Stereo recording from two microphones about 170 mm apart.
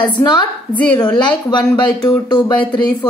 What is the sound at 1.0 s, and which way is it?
Speech, 25° left (ahead or behind).